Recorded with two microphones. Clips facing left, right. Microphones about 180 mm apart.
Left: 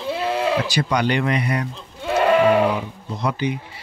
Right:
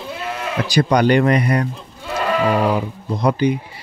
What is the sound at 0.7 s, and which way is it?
Speech, 45° right (ahead or behind).